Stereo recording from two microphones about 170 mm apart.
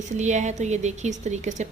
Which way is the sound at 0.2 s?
45° right (ahead or behind).